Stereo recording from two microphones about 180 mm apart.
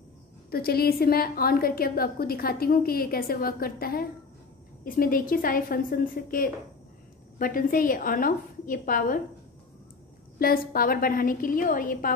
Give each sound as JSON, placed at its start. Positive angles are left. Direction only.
{"t": 0.5, "sound": "a woman's voice", "side_deg": 55}
{"t": 10.4, "sound": "a woman's voice", "side_deg": 55}